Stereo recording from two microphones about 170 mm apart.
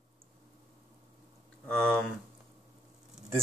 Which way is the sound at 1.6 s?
5° left (ahead or behind).